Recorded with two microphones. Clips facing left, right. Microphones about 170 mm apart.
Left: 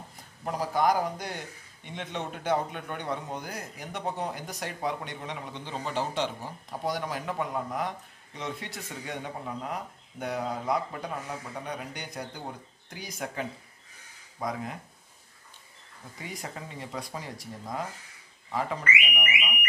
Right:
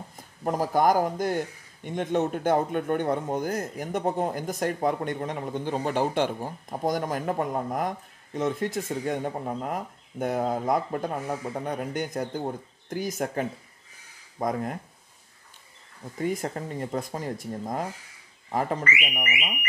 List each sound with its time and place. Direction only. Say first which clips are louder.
0.4 s speech: right 4 dB; 45° right (ahead or behind)
16.2 s speech: right 11 dB; 50° right (ahead or behind)